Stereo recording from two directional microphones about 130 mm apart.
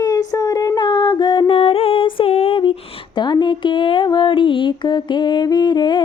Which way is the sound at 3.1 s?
35° left (ahead or behind).